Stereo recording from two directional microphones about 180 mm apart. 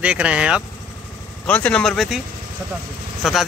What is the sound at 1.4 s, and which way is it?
Speech, 5° left (ahead or behind).